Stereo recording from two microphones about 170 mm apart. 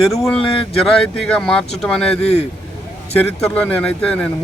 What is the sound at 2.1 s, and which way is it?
Speech, 40° left (ahead or behind).